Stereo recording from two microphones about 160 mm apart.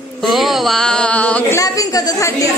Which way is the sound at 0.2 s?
Centre (ahead or behind).